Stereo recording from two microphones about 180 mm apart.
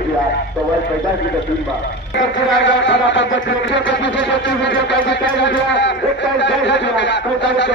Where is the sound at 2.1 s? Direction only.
90° left.